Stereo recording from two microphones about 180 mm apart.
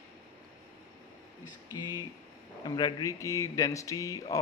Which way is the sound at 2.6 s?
20° left (ahead or behind).